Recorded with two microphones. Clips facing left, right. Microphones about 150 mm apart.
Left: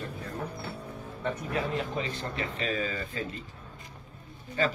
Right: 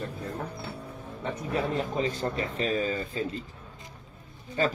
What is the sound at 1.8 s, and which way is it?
A man's voice, 40° right (ahead or behind).